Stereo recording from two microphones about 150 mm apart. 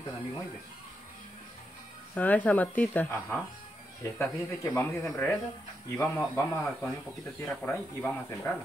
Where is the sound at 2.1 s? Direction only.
10° left (ahead or behind).